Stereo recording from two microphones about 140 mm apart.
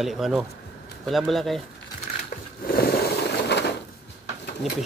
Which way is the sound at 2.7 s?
90° left.